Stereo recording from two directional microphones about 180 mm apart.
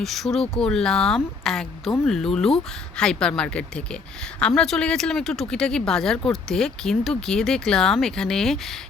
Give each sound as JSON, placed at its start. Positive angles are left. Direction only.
{"t": 0.0, "sound": "speech", "side_deg": 0}